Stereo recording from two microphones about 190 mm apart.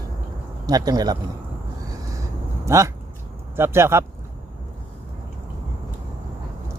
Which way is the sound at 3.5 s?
15° right (ahead or behind).